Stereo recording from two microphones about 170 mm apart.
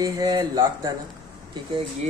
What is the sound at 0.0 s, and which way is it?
Speech, 20° right (ahead or behind).